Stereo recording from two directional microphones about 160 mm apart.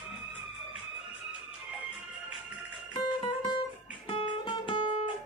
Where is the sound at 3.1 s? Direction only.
30° left (ahead or behind).